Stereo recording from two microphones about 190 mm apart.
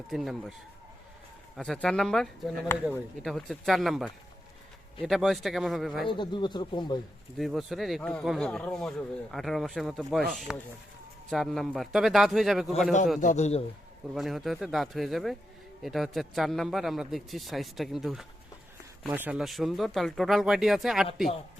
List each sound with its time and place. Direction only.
0.1 s a man's voice: centre (ahead or behind)
1.5 s a man's voice: centre (ahead or behind)
2.7 s a man's voice: 15° left (ahead or behind)
3.2 s a man's voice: centre (ahead or behind)
6.1 s speech: 25° left (ahead or behind)
7.3 s a man's voice: centre (ahead or behind)
13.2 s a man's voice: 35° left (ahead or behind)
14.1 s a man's voice: centre (ahead or behind)